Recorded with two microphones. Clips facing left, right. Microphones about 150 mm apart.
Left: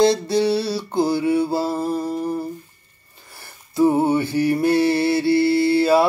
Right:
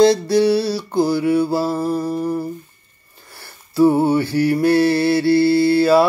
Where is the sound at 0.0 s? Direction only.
25° left (ahead or behind).